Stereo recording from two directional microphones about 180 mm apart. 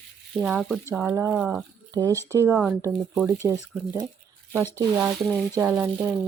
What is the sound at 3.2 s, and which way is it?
Speech, 15° right (ahead or behind).